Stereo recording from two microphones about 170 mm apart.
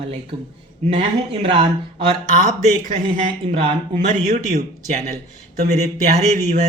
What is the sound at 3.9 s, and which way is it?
Speech, 45° right (ahead or behind).